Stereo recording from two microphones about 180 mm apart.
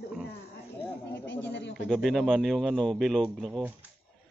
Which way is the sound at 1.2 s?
80° left.